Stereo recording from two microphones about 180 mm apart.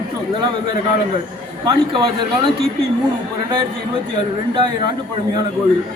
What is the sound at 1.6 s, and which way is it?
Speech, 25° right (ahead or behind).